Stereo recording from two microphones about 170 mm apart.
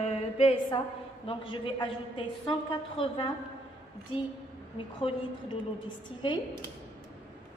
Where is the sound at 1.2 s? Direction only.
30° left (ahead or behind).